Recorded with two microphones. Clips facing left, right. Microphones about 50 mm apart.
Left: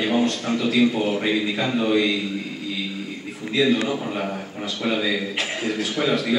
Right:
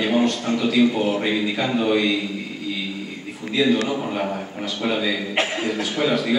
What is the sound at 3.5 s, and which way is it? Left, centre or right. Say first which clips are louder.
A man's voice: right 1 dB; centre.